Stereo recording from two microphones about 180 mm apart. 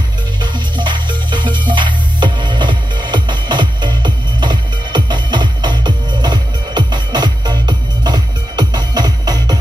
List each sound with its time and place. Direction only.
0.4 s music: 25° right (ahead or behind)